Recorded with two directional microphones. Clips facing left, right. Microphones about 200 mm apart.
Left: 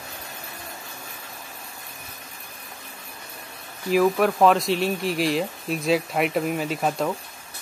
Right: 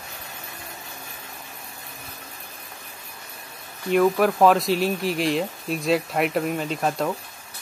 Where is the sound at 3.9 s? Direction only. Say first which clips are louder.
Right 1 dB; centre (ahead or behind).